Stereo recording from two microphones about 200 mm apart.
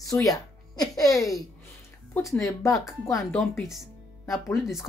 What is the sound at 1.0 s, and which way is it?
Speech, centre (ahead or behind).